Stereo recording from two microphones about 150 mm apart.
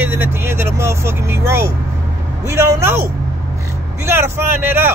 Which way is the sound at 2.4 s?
20° right (ahead or behind).